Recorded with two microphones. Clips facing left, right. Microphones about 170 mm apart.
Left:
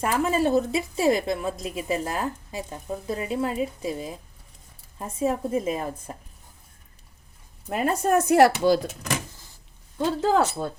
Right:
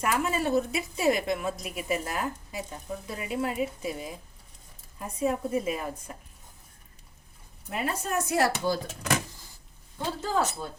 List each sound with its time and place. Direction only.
0.0 s a woman's voice: 35° left (ahead or behind)
7.7 s speech: 45° left (ahead or behind); by 8.8 s 75° left (ahead or behind)
10.2 s speech: 60° left (ahead or behind)